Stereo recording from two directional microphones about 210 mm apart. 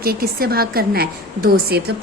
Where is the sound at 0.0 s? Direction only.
45° right (ahead or behind).